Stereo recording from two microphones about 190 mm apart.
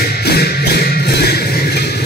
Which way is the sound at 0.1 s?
55° left (ahead or behind).